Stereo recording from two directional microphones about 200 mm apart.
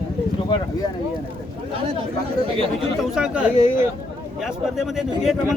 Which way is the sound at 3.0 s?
5° right (ahead or behind).